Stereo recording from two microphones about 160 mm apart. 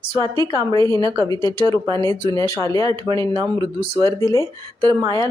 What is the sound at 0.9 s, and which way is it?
Speech, 30° right (ahead or behind).